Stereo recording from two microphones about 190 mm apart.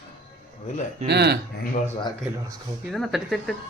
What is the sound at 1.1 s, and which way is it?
Speech, 60° right (ahead or behind).